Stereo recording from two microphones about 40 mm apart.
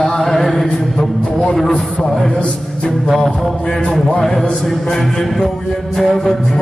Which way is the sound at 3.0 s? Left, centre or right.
Centre.